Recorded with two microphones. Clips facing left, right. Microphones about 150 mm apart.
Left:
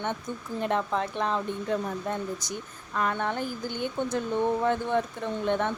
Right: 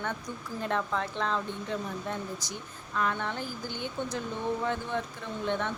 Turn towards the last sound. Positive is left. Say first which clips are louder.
# left 5 dB
turn(degrees=50)  # may be behind; listen again after turning